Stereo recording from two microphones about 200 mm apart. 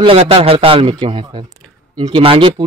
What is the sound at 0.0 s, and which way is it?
A man's voice, 30° right (ahead or behind).